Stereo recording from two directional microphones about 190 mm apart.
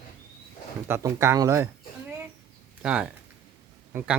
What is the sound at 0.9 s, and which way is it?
Speech, 15° right (ahead or behind).